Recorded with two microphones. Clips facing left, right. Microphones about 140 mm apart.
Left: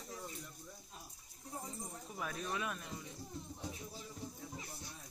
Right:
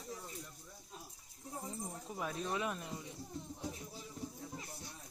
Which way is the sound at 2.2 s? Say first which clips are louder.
Right 2 dB; 25° right (ahead or behind).